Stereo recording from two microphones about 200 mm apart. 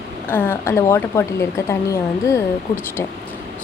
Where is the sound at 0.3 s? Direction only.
10° left (ahead or behind).